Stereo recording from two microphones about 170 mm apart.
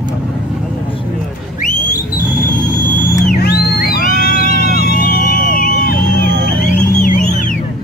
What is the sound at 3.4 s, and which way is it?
Music, 70° left (ahead or behind).